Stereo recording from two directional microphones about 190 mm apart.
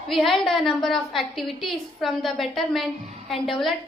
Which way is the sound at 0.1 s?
Centre (ahead or behind).